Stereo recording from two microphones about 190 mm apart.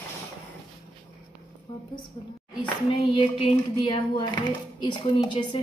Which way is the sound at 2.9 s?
30° left (ahead or behind).